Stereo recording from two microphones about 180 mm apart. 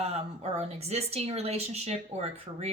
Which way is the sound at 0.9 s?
35° right (ahead or behind).